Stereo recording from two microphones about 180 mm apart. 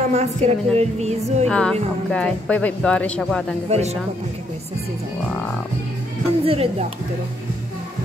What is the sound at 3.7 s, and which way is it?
Speech, 35° right (ahead or behind).